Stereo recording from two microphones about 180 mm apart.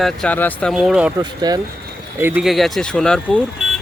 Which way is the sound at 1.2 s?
20° right (ahead or behind).